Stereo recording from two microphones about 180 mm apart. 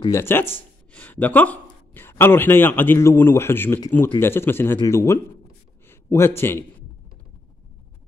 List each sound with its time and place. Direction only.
0.1 s a man's voice: 15° left (ahead or behind)